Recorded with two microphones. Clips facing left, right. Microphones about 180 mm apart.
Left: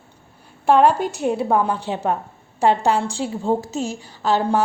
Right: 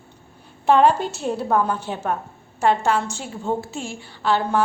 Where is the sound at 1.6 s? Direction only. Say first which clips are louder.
Left 2 dB; 25° left (ahead or behind).